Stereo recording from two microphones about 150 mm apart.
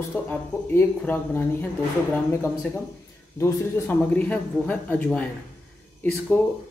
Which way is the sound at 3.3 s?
15° left (ahead or behind).